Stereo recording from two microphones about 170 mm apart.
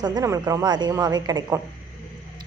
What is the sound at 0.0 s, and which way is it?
A woman's voice, 20° right (ahead or behind).